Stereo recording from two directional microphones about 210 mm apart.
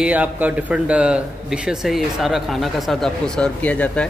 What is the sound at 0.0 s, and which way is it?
Speech, 5° right (ahead or behind).